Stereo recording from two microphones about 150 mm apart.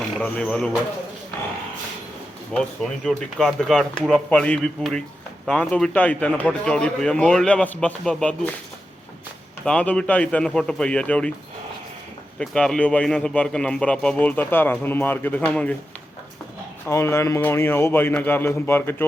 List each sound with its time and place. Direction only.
0.2 s speech: 5° left (ahead or behind)
2.5 s a man's voice: 5° left (ahead or behind)
9.6 s a man's voice: 5° left (ahead or behind)
12.4 s a man's voice: 5° left (ahead or behind)
16.8 s a man's voice: 20° left (ahead or behind)